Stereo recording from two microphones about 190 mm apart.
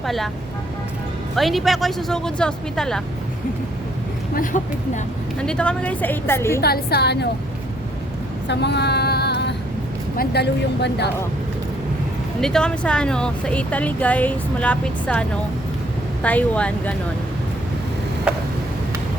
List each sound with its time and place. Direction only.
0.0 s speech: centre (ahead or behind)
1.4 s speech: centre (ahead or behind)
4.4 s speech: 40° left (ahead or behind)
5.4 s speech: 5° left (ahead or behind)
6.6 s speech: 55° left (ahead or behind)
8.4 s female singing: 60° left (ahead or behind)
10.2 s speech: 60° left (ahead or behind)
12.4 s speech: 5° left (ahead or behind)
18.3 s a sound: 5° right (ahead or behind)